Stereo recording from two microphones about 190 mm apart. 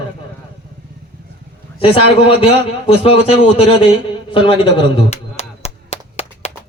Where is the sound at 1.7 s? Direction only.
30° left (ahead or behind).